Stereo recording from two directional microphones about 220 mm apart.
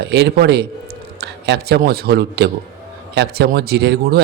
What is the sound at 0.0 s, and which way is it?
Speech, 50° right (ahead or behind).